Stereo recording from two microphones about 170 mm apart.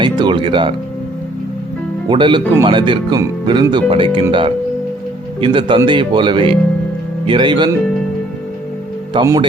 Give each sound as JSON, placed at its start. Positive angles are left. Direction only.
{"t": 0.0, "sound": "speech", "side_deg": -25}
{"t": 2.0, "sound": "speech", "side_deg": -30}
{"t": 9.1, "sound": "speech", "side_deg": -30}